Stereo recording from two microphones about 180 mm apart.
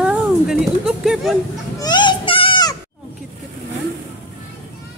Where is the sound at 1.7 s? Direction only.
25° left (ahead or behind).